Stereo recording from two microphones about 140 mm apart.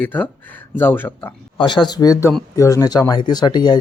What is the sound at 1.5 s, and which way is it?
Speech, 35° left (ahead or behind).